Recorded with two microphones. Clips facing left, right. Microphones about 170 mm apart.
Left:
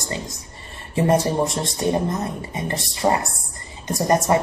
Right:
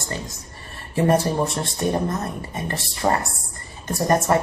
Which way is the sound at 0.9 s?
20° left (ahead or behind).